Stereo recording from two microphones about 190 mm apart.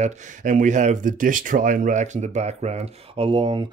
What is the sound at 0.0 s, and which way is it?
Speech, 45° right (ahead or behind).